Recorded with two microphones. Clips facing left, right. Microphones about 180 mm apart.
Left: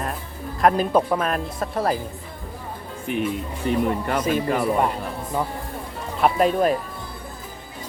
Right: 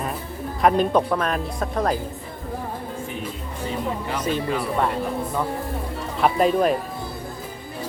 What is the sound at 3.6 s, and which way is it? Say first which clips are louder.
Speech: left 5 dB; 55° left (ahead or behind).